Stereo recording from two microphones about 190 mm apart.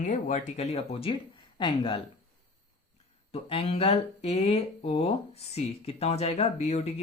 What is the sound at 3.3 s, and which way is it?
Speech, 30° left (ahead or behind).